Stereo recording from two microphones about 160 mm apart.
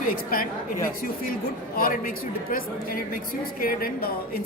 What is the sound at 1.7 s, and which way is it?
A woman's voice, 65° left (ahead or behind).